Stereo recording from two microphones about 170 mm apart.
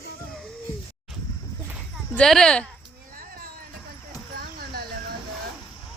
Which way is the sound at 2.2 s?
5° left (ahead or behind).